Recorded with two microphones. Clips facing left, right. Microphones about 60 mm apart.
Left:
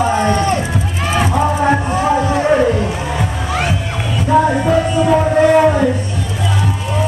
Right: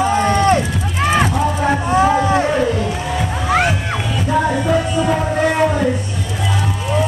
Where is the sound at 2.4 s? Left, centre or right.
Left.